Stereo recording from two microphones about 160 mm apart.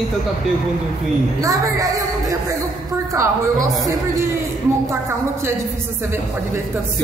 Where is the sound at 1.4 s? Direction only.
20° right (ahead or behind).